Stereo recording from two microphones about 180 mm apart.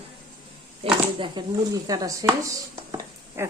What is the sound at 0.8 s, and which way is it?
Speech, 25° right (ahead or behind).